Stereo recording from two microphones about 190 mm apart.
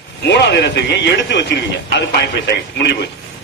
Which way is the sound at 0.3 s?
65° left (ahead or behind).